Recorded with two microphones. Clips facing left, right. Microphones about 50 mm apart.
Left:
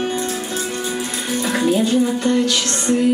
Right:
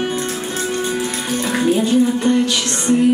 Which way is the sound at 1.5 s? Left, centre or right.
Right.